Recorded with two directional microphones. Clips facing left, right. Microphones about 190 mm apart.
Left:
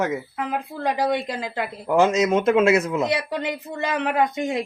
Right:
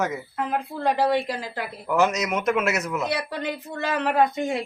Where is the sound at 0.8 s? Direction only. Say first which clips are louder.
Right 1 dB; 15° left (ahead or behind).